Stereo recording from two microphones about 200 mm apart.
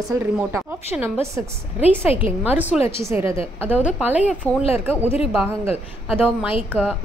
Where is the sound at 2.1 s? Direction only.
30° left (ahead or behind).